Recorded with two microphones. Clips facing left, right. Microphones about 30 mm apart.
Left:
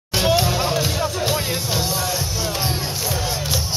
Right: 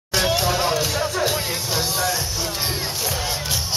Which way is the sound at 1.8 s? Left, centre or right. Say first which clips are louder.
Even; right.